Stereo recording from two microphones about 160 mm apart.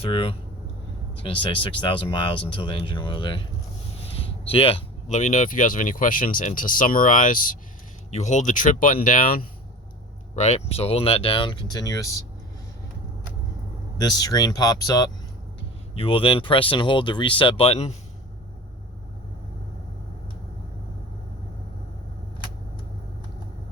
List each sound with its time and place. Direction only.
0.0 s speech: 35° left (ahead or behind); by 7.6 s 60° left (ahead or behind)
8.1 s speech: 45° left (ahead or behind)
10.3 s speech: 45° left (ahead or behind); by 12.2 s 20° left (ahead or behind)
14.0 s speech: 25° left (ahead or behind)
16.0 s speech: 35° left (ahead or behind)